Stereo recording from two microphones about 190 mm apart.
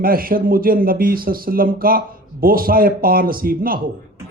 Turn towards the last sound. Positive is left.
turn(degrees=-50)  # may be behind; listen again after turning